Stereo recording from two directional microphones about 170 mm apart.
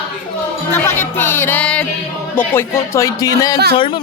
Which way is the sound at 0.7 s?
15° left (ahead or behind).